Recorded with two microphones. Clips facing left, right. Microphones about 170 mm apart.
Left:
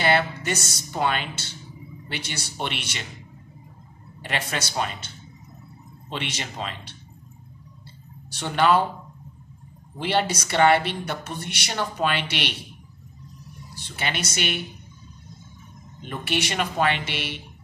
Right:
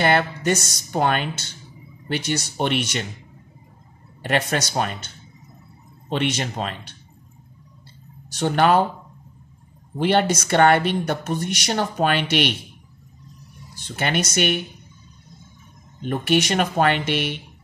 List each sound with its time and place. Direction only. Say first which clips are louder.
0.0 s speech: right 3 dB; 50° right (ahead or behind)
4.2 s speech: right 7 dB; 45° right (ahead or behind)
8.3 s speech: right 3 dB; 45° right (ahead or behind)
9.9 s speech: right 5 dB; 50° right (ahead or behind)
13.9 s speech: right 7 dB; 50° right (ahead or behind)
16.1 s speech: right 7 dB; 45° right (ahead or behind)